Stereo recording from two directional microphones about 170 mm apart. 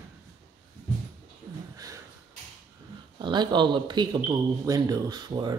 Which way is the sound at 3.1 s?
25° right (ahead or behind).